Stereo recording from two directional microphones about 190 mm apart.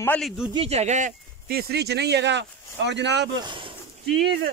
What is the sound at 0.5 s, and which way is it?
Speech, 30° right (ahead or behind).